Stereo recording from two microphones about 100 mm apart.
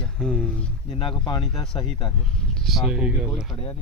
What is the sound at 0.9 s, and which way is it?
Speech, 60° left (ahead or behind).